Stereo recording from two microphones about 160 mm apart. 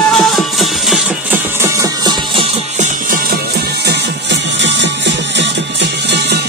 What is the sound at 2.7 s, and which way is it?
Music, 55° right (ahead or behind).